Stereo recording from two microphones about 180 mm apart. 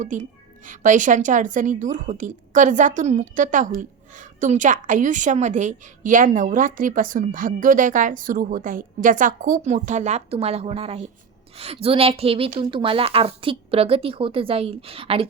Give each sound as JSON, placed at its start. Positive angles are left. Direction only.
{"t": 0.0, "sound": "a woman's voice", "side_deg": -45}